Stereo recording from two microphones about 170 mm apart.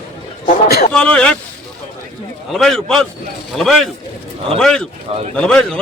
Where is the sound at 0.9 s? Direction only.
5° left (ahead or behind).